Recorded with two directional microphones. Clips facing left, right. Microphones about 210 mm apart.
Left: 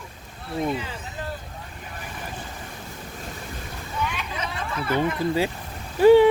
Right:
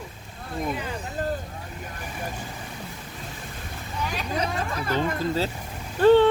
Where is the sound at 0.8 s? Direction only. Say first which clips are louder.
Right 4 dB; 45° right (ahead or behind).